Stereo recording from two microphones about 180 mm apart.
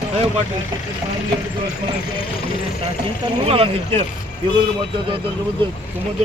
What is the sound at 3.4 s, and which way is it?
Speech, 30° right (ahead or behind).